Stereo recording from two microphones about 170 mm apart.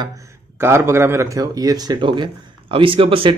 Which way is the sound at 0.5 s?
15° right (ahead or behind).